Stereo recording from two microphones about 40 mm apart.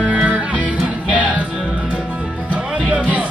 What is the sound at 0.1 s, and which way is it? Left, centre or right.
Music, right.